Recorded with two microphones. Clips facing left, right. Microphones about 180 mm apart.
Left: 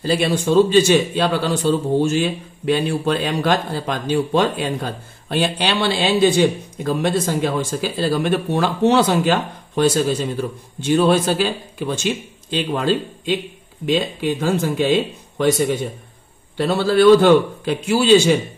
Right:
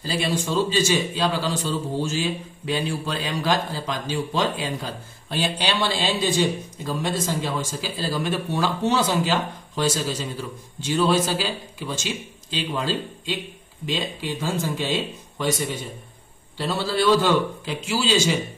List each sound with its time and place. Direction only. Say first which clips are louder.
0.0 s a man's voice: left 7 dB; 60° left (ahead or behind)
16.5 s a man's voice: left 8 dB; 60° left (ahead or behind)